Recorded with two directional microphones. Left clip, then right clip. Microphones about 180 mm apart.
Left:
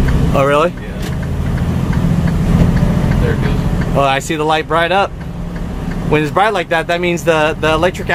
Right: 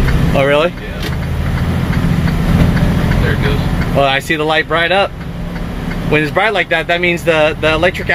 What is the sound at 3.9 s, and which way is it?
Speech, 5° left (ahead or behind).